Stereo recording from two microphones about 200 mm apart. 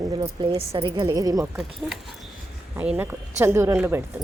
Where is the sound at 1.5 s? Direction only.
Centre (ahead or behind).